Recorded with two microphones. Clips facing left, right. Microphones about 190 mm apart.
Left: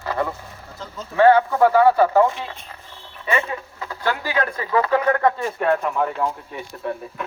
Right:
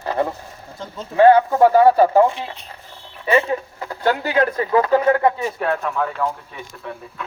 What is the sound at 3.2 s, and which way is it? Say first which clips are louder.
Speech: right 6 dB; 30° right (ahead or behind).